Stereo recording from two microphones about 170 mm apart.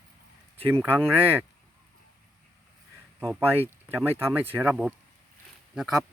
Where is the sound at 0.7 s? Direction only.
10° right (ahead or behind).